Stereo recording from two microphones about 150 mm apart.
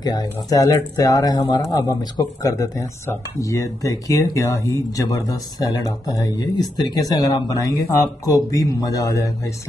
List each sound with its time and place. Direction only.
0.0 s speech: 25° left (ahead or behind)